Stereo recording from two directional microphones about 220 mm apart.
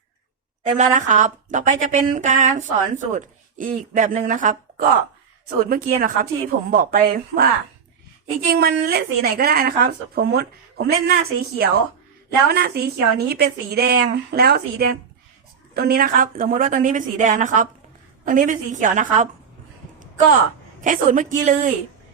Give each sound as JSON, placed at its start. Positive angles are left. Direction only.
{"t": 0.6, "sound": "speech", "side_deg": -35}
{"t": 20.8, "sound": "speech", "side_deg": -35}